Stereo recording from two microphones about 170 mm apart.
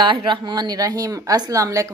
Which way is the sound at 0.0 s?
30° right (ahead or behind).